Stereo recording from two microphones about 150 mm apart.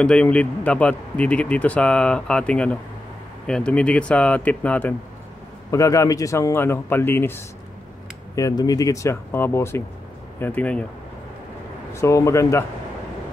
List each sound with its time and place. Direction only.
0.0 s speech: 5° left (ahead or behind)
5.7 s speech: 20° left (ahead or behind)
11.9 s speech: 20° left (ahead or behind)